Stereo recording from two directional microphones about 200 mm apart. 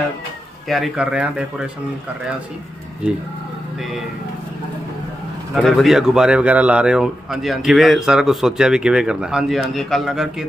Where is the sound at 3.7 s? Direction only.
Centre (ahead or behind).